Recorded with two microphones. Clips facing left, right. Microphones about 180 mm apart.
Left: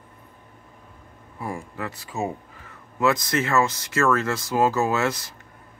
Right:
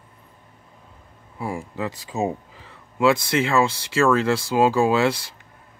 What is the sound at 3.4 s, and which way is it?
Speech, 10° right (ahead or behind).